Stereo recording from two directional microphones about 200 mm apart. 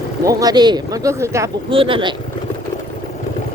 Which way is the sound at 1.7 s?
25° right (ahead or behind).